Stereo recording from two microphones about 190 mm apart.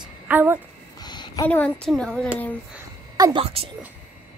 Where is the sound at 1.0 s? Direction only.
20° left (ahead or behind).